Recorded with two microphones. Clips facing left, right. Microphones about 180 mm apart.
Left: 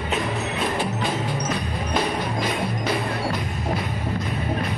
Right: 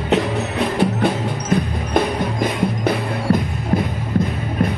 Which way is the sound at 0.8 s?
60° right (ahead or behind).